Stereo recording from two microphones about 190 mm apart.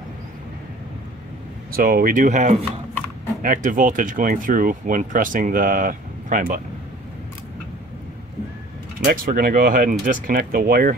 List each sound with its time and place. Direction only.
1.7 s speech: 50° right (ahead or behind)
9.0 s speech: 45° right (ahead or behind)